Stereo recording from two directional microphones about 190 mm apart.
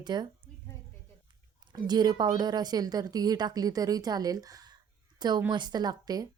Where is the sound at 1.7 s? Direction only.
20° right (ahead or behind).